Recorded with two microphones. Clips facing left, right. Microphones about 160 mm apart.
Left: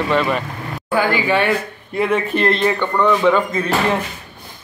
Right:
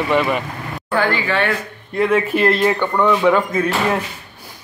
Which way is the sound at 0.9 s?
10° left (ahead or behind).